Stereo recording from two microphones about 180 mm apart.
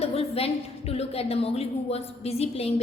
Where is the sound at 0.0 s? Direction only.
35° left (ahead or behind).